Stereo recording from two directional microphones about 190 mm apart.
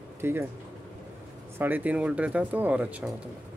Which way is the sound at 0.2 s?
10° right (ahead or behind).